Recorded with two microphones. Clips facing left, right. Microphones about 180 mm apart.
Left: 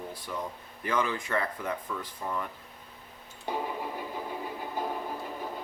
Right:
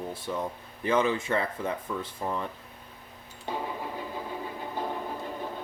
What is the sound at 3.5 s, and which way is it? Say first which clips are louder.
Vehicle: left 1 dB; 10° left (ahead or behind).